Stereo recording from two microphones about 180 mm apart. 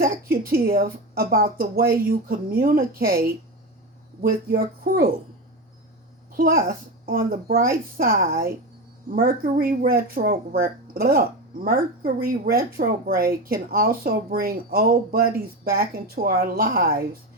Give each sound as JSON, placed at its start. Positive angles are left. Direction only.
{"t": 0.0, "sound": "speech", "side_deg": -55}
{"t": 6.3, "sound": "speech", "side_deg": -50}